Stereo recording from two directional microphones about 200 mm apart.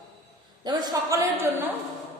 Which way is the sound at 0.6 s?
20° right (ahead or behind).